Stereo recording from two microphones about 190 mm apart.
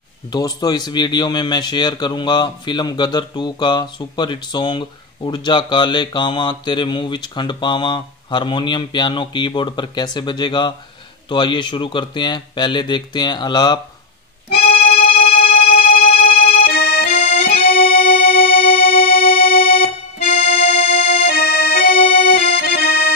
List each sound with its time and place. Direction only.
0.3 s speech: 20° left (ahead or behind)
15.0 s music: 50° left (ahead or behind)
16.5 s accordion: 55° left (ahead or behind)
17.2 s accordion: 30° left (ahead or behind)
17.6 s music: 50° left (ahead or behind)
20.3 s music: 30° left (ahead or behind)
21.3 s accordion: 50° left (ahead or behind)
21.9 s music: 30° left (ahead or behind)
22.6 s accordion: 50° left (ahead or behind)